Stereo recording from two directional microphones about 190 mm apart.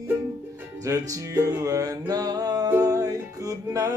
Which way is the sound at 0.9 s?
15° right (ahead or behind).